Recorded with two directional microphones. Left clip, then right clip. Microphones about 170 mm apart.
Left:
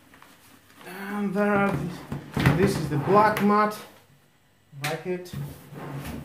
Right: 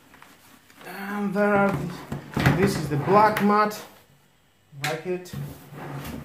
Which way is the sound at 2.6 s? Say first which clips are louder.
Right 1 dB; 30° right (ahead or behind).